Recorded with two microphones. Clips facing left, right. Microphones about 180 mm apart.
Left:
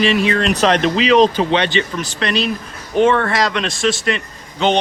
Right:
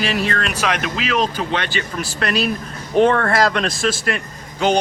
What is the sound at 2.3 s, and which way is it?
Speech, 5° right (ahead or behind).